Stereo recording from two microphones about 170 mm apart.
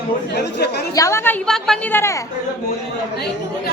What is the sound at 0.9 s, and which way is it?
Speech, 20° left (ahead or behind).